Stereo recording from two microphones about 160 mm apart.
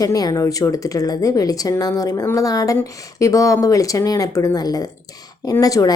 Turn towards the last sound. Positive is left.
turn(degrees=20)  # may be behind; listen again after turning